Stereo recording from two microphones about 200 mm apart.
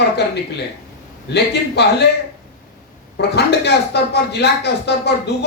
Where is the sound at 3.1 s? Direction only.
55° left (ahead or behind).